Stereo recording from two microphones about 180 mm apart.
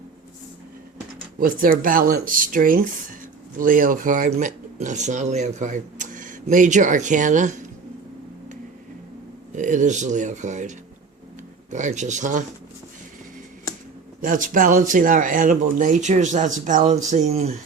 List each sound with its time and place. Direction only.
1.4 s speech: 50° right (ahead or behind)
9.6 s speech: 45° right (ahead or behind)
14.2 s speech: 50° right (ahead or behind)